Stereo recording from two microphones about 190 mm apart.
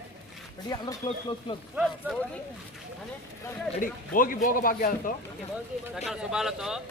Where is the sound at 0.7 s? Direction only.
20° left (ahead or behind).